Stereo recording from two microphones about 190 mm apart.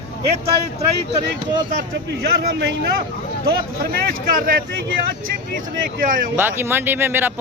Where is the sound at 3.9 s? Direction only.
50° right (ahead or behind).